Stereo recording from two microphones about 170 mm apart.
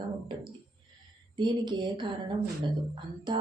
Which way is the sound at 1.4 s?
25° right (ahead or behind).